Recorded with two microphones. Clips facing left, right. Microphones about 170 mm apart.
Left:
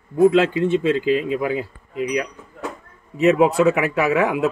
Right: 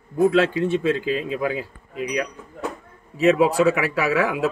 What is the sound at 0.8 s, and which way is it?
Speech, 40° right (ahead or behind).